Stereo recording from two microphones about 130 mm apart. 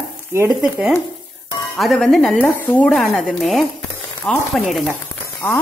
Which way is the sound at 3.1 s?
Centre (ahead or behind).